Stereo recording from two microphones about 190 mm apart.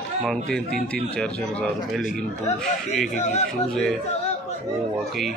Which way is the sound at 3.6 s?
Centre (ahead or behind).